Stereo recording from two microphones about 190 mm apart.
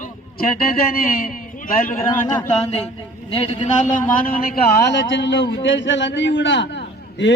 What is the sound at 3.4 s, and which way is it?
Speech, 30° left (ahead or behind).